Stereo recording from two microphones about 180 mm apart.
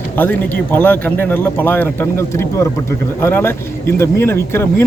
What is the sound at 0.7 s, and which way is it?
Speech, 10° left (ahead or behind).